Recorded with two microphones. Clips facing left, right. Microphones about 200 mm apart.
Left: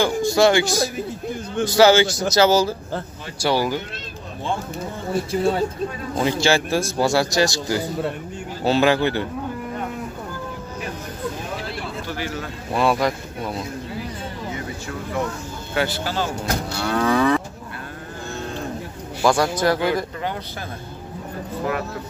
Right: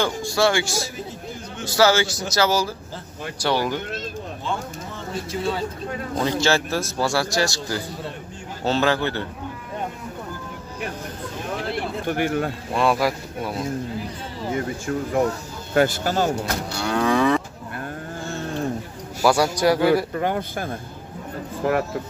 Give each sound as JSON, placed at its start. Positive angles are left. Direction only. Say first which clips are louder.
{"t": 0.0, "sound": "a man's voice", "louder": "left 4 dB", "side_deg": 20}
{"t": 3.3, "sound": "speech", "louder": "left 2 dB", "side_deg": 10}
{"t": 5.1, "sound": "speech", "louder": "left 5 dB", "side_deg": 55}
{"t": 6.2, "sound": "speech", "louder": "left 2 dB", "side_deg": 10}
{"t": 11.7, "sound": "a sound", "louder": "right 4 dB", "side_deg": -55}
{"t": 12.7, "sound": "speech", "louder": "left 1 dB", "side_deg": 0}
{"t": 14.5, "sound": "speech", "louder": "right 5 dB", "side_deg": -50}
{"t": 16.8, "sound": "speech", "louder": "even", "side_deg": 0}
{"t": 19.2, "sound": "a man's voice", "louder": "even", "side_deg": -10}
{"t": 20.2, "sound": "speech", "louder": "right 5 dB", "side_deg": -50}